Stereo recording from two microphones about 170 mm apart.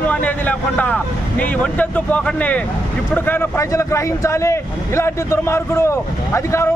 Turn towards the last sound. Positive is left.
turn(degrees=15)  # may be behind; listen again after turning